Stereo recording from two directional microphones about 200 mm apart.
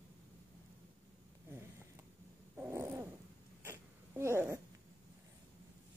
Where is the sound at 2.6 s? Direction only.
10° right (ahead or behind).